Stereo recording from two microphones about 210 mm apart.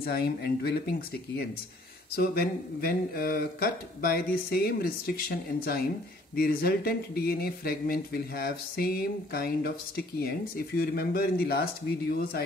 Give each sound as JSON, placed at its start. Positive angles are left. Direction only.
{"t": 0.0, "sound": "speech", "side_deg": 50}